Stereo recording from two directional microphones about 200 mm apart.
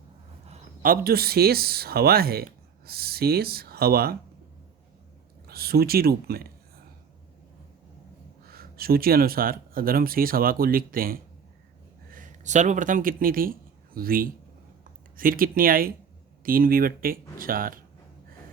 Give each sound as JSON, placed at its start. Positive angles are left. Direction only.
{"t": 0.8, "sound": "speech", "side_deg": -50}
{"t": 5.5, "sound": "speech", "side_deg": -50}
{"t": 8.4, "sound": "speech", "side_deg": -50}